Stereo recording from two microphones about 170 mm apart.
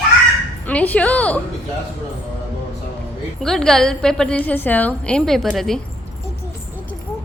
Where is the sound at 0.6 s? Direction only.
10° left (ahead or behind).